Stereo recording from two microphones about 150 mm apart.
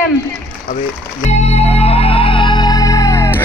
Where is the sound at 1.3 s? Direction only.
45° left (ahead or behind); by 3.4 s 15° left (ahead or behind).